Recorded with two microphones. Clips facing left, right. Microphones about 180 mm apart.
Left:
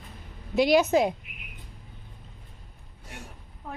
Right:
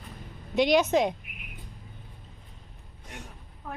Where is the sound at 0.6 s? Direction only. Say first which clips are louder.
Left 1 dB; 5° left (ahead or behind).